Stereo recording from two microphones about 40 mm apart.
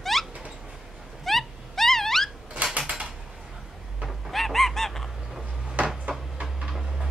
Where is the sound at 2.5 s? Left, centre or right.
Right.